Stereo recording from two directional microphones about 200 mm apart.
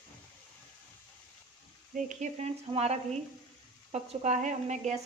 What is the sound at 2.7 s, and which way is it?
Speech, 30° right (ahead or behind).